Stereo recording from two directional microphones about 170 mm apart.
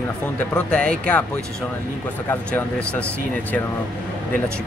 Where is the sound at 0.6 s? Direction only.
5° left (ahead or behind).